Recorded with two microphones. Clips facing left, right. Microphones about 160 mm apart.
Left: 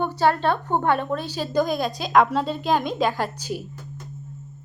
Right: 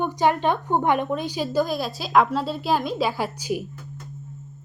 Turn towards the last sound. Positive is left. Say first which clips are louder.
# right 1 dB
turn(degrees=-10)  # may be behind; listen again after turning